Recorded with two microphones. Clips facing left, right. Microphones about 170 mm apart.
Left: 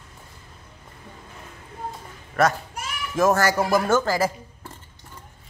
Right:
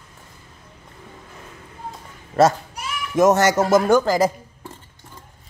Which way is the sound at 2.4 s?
25° right (ahead or behind).